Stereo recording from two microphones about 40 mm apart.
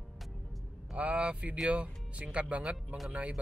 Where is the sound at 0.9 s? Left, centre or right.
Right.